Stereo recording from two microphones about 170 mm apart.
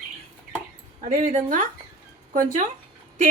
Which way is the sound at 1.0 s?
45° right (ahead or behind).